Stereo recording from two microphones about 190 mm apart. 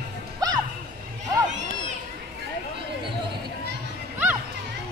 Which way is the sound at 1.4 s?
40° right (ahead or behind).